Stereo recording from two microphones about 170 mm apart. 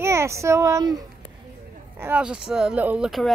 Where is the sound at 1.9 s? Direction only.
10° right (ahead or behind).